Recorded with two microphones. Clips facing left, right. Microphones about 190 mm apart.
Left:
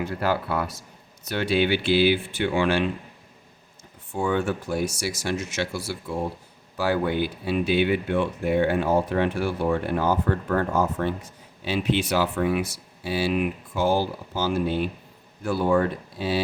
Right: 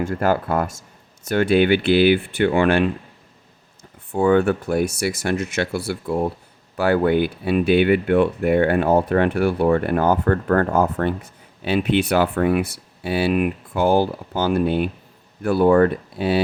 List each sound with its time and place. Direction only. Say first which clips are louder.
0.0 s speech: right 5 dB; 50° right (ahead or behind)
4.1 s speech: right 8 dB; 60° right (ahead or behind)